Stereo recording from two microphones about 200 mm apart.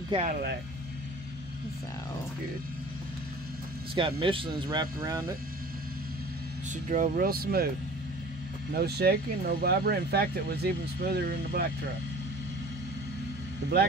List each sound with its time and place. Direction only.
0.1 s speech: 35° right (ahead or behind)
3.9 s speech: 25° right (ahead or behind)
6.7 s speech: 40° right (ahead or behind)
8.7 s speech: 55° right (ahead or behind)